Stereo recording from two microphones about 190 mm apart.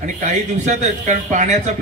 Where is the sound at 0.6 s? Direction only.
40° right (ahead or behind).